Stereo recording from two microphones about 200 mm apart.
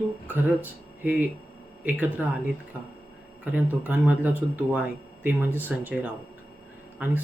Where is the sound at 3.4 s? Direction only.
5° right (ahead or behind).